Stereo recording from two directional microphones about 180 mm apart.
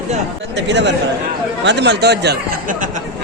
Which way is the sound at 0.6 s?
75° right (ahead or behind).